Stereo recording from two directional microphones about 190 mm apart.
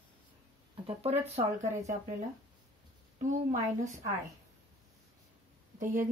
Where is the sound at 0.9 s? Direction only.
35° right (ahead or behind).